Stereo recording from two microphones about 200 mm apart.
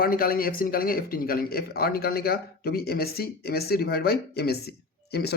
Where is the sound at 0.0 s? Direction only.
50° left (ahead or behind).